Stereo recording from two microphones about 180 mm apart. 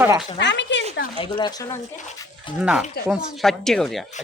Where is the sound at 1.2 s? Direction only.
25° left (ahead or behind).